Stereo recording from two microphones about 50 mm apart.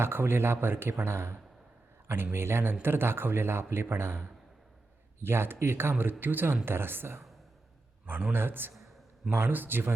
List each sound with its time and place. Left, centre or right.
0.0 s a man's voice: right
8.3 s a man's voice: right